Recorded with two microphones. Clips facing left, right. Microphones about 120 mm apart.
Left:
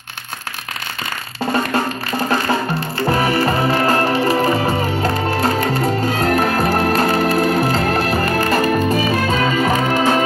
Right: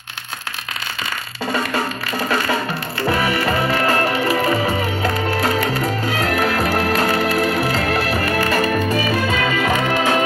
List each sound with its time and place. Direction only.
1.5 s music: 40° left (ahead or behind)